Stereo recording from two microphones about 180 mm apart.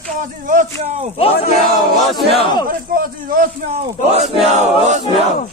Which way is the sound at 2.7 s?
50° right (ahead or behind).